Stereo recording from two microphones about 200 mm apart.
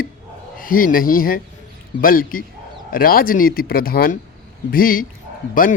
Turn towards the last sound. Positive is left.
turn(degrees=45)  # may be behind; listen again after turning